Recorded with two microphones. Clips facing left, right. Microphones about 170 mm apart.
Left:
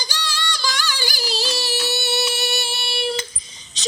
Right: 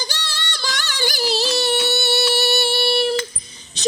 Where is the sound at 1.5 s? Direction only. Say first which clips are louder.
Right 5 dB; 65° right (ahead or behind).